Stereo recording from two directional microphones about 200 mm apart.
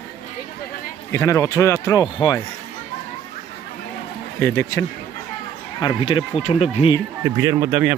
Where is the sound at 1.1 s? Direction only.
15° left (ahead or behind).